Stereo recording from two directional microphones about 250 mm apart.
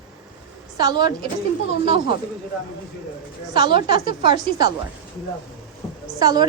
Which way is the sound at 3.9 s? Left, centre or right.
Left.